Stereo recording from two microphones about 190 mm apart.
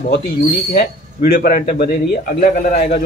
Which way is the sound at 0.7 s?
50° left (ahead or behind).